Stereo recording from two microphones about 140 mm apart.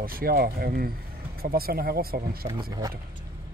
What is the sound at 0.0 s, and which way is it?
Speech, 90° right.